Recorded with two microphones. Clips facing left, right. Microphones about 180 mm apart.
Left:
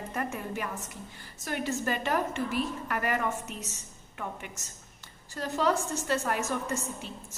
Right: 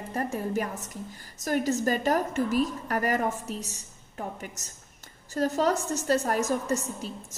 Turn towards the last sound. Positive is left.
turn(degrees=-40)  # may be behind; listen again after turning